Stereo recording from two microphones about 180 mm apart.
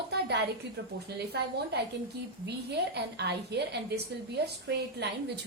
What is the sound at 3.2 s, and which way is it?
A woman's voice, 65° right (ahead or behind).